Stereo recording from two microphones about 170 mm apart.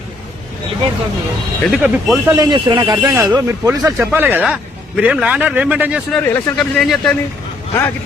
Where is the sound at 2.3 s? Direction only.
25° right (ahead or behind); by 6.0 s 10° right (ahead or behind).